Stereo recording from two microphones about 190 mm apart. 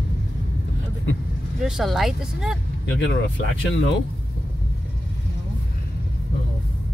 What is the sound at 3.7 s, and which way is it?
Speech, 65° left (ahead or behind).